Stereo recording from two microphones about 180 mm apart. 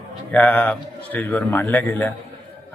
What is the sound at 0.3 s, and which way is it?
A man's voice, 5° left (ahead or behind).